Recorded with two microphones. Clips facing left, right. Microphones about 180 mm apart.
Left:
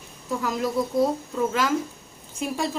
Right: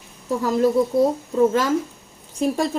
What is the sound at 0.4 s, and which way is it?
Speech, 35° right (ahead or behind).